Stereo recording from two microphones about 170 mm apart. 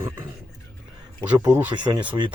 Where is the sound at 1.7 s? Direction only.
25° right (ahead or behind).